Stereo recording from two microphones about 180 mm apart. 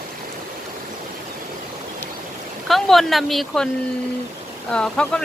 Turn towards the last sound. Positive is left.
turn(degrees=5)  # may be behind; listen again after turning